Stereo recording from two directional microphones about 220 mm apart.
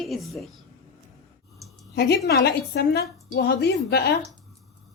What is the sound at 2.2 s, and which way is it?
A woman's voice, 45° left (ahead or behind).